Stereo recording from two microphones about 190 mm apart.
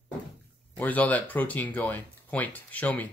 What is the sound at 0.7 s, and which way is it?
Speech, 10° left (ahead or behind).